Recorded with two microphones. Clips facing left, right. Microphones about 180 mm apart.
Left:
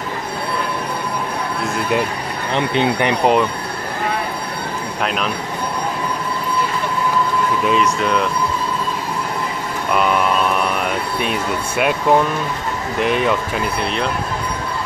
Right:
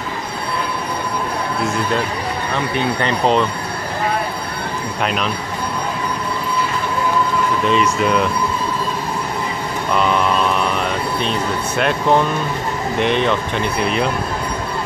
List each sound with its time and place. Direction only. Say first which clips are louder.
2.5 s speech: left 4 dB; 20° left (ahead or behind)
5.0 s speech: right 1 dB; centre (ahead or behind)
7.6 s speech: right 2 dB; centre (ahead or behind)
9.9 s speech: even; 5° left (ahead or behind)